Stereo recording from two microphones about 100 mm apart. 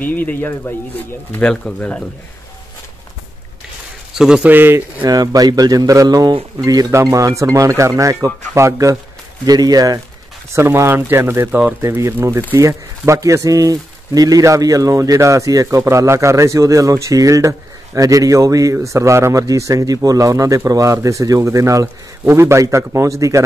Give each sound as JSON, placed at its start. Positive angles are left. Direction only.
{"t": 0.0, "sound": "speech", "side_deg": 20}
{"t": 4.1, "sound": "speech", "side_deg": -5}
{"t": 5.0, "sound": "speech", "side_deg": -40}
{"t": 10.5, "sound": "speech", "side_deg": -25}